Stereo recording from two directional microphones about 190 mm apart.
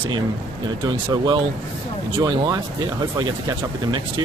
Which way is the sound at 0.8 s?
25° right (ahead or behind).